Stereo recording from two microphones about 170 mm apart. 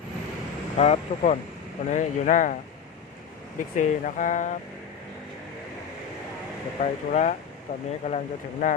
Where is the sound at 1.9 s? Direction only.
45° left (ahead or behind).